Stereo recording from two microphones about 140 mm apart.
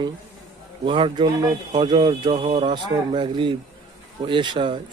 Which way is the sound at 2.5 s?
55° right (ahead or behind).